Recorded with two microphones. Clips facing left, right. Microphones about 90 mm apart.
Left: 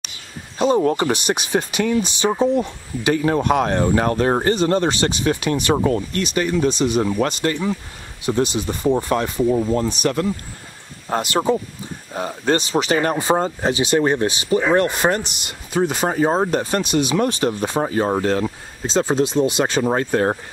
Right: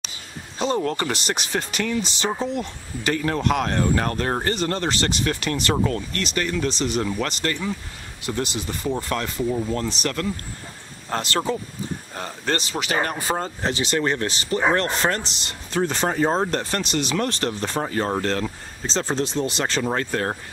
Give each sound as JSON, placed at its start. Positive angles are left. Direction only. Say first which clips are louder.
{"t": 0.6, "sound": "speech", "louder": "left 6 dB", "side_deg": 10}